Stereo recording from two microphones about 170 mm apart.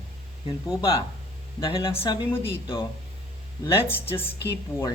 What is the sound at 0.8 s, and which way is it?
Speech, 30° left (ahead or behind).